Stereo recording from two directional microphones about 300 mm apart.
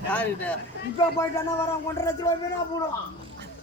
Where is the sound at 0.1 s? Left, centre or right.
Centre.